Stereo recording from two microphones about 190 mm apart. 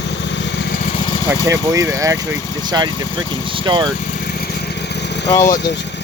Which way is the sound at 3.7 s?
25° right (ahead or behind).